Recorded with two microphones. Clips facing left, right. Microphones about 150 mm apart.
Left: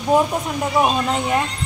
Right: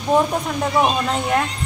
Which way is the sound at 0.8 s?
5° left (ahead or behind).